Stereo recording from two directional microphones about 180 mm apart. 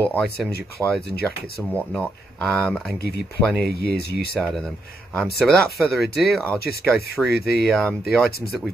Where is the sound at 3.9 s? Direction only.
60° left (ahead or behind).